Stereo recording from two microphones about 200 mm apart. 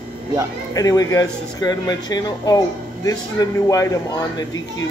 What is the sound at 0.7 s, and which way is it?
Speech, 20° left (ahead or behind).